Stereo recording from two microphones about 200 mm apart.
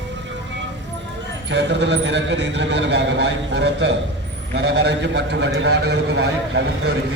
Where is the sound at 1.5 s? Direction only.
60° right (ahead or behind).